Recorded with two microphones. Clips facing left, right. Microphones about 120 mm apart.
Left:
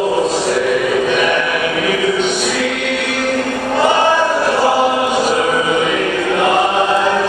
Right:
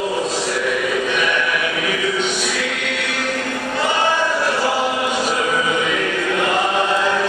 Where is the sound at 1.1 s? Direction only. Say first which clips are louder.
Left 5 dB; 50° left (ahead or behind).